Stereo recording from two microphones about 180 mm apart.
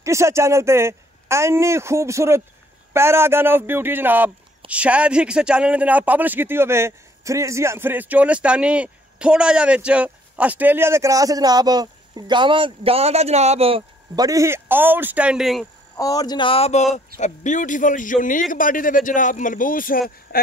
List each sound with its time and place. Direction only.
0.0 s speech: 15° right (ahead or behind)
16.0 s a man's voice: 20° left (ahead or behind); by 20.3 s 55° left (ahead or behind)